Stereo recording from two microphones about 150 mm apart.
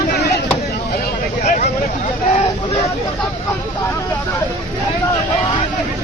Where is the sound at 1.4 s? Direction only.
55° left (ahead or behind).